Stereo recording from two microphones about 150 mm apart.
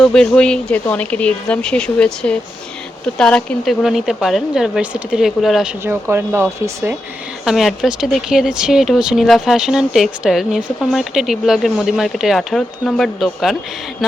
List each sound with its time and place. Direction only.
0.0 s speech: 5° left (ahead or behind)
5.8 s speech: 15° right (ahead or behind)
7.4 s speech: centre (ahead or behind)